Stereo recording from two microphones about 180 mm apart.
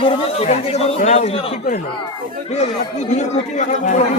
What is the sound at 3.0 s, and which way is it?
Speech, 40° left (ahead or behind).